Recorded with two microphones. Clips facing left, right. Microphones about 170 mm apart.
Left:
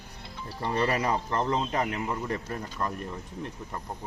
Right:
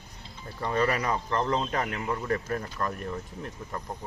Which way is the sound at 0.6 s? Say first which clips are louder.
Even; 30° left (ahead or behind).